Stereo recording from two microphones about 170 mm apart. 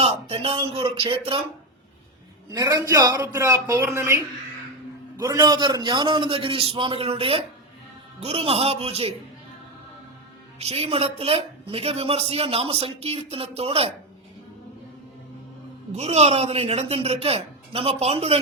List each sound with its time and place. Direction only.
0.0 s a man's voice: 35° right (ahead or behind)
2.5 s a man's voice: 20° right (ahead or behind); by 9.1 s 35° right (ahead or behind)
10.6 s a man's voice: 35° right (ahead or behind)
15.9 s a man's voice: 40° right (ahead or behind)